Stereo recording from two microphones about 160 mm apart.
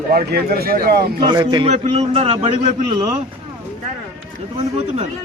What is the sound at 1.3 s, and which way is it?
Speech, 25° right (ahead or behind).